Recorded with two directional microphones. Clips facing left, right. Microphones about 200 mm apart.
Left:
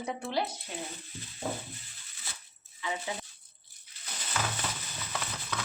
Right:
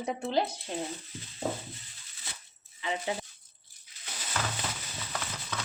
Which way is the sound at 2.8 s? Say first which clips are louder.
Right 3 dB; 25° right (ahead or behind).